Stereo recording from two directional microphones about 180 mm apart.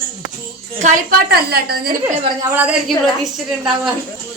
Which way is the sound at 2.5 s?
10° right (ahead or behind).